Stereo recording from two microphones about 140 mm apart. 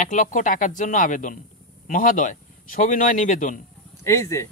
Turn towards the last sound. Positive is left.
turn(degrees=20)  # may be behind; listen again after turning